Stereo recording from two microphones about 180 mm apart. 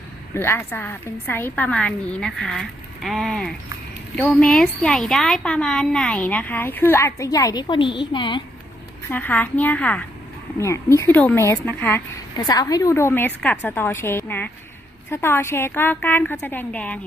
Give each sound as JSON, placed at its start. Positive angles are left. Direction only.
{"t": 0.3, "sound": "speech", "side_deg": 15}
{"t": 9.0, "sound": "speech", "side_deg": 10}